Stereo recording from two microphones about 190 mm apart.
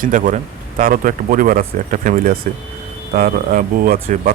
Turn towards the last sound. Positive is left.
turn(degrees=-45)  # may be behind; listen again after turning